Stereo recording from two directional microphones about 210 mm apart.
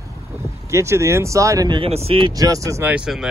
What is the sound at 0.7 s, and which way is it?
Speech, 15° right (ahead or behind).